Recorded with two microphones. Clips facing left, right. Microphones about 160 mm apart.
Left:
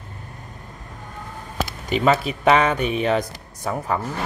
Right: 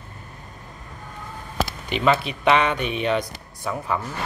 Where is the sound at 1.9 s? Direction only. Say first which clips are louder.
Left 3 dB; 40° left (ahead or behind).